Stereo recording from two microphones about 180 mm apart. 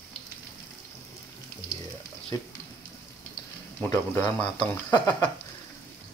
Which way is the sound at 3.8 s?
15° left (ahead or behind).